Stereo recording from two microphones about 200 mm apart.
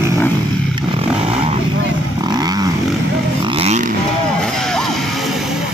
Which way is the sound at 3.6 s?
35° right (ahead or behind).